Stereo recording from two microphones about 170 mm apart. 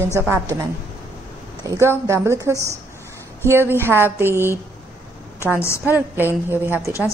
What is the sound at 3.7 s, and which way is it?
Speech, 15° right (ahead or behind).